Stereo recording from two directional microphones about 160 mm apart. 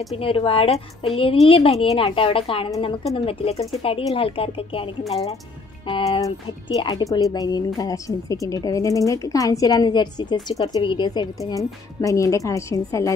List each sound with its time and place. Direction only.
0.1 s a woman's voice: 35° left (ahead or behind); by 13.1 s 20° left (ahead or behind)